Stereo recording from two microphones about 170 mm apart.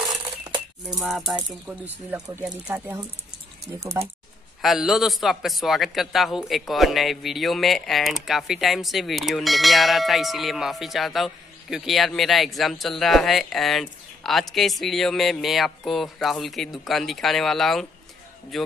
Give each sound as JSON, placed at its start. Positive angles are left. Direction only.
{"t": 0.0, "sound": "a sound", "side_deg": -25}
{"t": 0.8, "sound": "a man's voice", "side_deg": -5}
{"t": 2.1, "sound": "speech", "side_deg": -20}
{"t": 3.7, "sound": "speech", "side_deg": -15}
{"t": 4.6, "sound": "a man's voice", "side_deg": 0}